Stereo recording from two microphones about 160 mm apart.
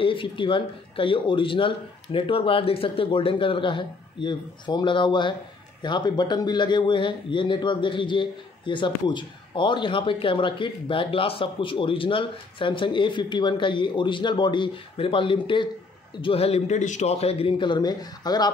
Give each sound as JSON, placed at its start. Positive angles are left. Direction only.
{"t": 0.0, "sound": "a man's voice", "side_deg": 30}